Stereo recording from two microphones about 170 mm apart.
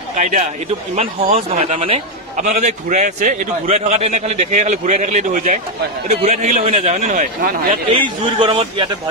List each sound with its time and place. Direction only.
0.2 s a man's voice: 40° right (ahead or behind)
7.9 s a man's voice: 30° right (ahead or behind)